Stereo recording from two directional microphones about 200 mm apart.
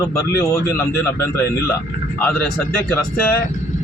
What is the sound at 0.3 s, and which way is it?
Speech, 15° left (ahead or behind).